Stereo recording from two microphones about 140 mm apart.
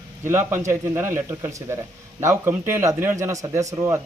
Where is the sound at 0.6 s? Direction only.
20° right (ahead or behind).